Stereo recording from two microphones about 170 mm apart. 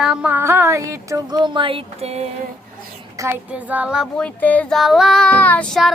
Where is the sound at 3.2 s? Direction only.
10° right (ahead or behind).